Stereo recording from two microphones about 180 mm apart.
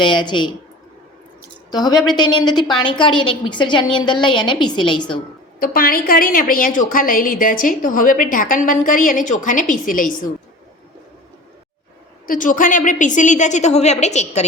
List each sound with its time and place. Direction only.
0.0 s a woman's voice: 25° left (ahead or behind)
1.7 s a woman's voice: 20° left (ahead or behind)
5.5 s a woman's voice: 55° left (ahead or behind)
12.3 s a woman's voice: 50° left (ahead or behind)